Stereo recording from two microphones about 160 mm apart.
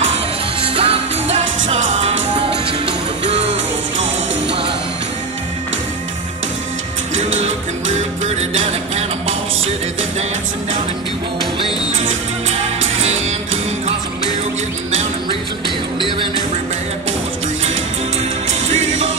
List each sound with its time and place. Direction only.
0.7 s music: 35° right (ahead or behind)
7.2 s music: 45° right (ahead or behind)
18.5 s music: 45° right (ahead or behind)